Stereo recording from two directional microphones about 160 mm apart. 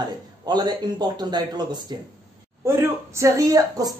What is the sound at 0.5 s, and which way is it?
A woman's voice, 25° right (ahead or behind).